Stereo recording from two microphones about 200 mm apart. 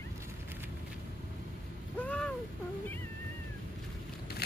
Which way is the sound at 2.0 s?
5° left (ahead or behind).